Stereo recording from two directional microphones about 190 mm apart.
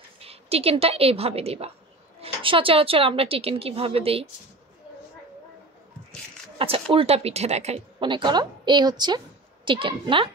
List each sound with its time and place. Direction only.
0.2 s a woman's voice: 30° right (ahead or behind)
6.9 s a woman's voice: 30° right (ahead or behind)